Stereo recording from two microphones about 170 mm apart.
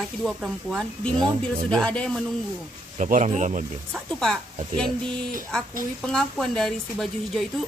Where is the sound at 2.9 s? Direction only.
45° right (ahead or behind).